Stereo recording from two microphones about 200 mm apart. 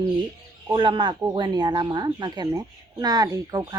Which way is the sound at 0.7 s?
25° right (ahead or behind).